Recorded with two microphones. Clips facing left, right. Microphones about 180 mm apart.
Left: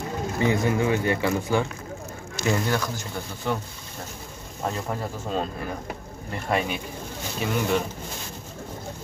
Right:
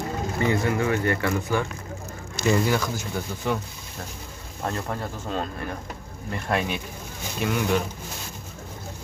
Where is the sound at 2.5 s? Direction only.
5° right (ahead or behind).